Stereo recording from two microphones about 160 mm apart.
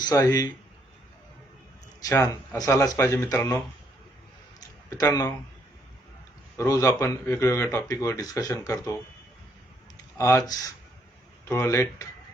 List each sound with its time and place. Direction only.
0.0 s speech: 25° left (ahead or behind)
2.0 s speech: 20° left (ahead or behind)
4.9 s speech: 20° left (ahead or behind)
6.6 s speech: 20° left (ahead or behind)
10.2 s speech: 15° left (ahead or behind)